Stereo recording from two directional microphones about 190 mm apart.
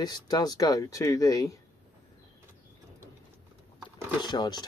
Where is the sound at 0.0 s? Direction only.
20° left (ahead or behind).